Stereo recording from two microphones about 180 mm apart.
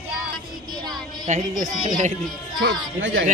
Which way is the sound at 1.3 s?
45° right (ahead or behind).